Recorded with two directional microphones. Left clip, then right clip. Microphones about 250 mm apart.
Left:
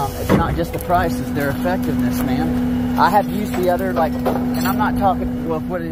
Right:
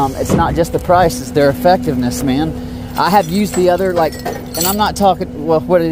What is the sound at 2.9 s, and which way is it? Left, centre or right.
Speech, right.